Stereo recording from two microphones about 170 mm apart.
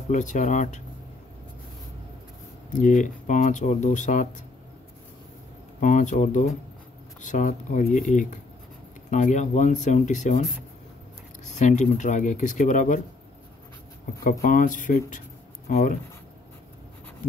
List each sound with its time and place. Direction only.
0.1 s speech: 45° left (ahead or behind)
2.7 s speech: 50° left (ahead or behind)
5.8 s speech: 45° left (ahead or behind)
11.4 s speech: 45° left (ahead or behind)
14.4 s speech: 50° left (ahead or behind)